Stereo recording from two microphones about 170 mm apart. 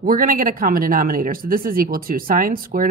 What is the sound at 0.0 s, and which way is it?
Speech, 60° right (ahead or behind).